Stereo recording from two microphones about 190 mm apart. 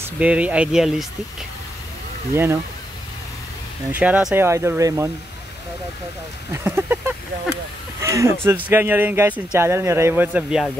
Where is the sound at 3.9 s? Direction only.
5° right (ahead or behind).